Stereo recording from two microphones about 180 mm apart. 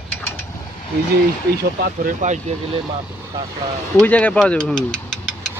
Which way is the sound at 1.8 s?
50° right (ahead or behind).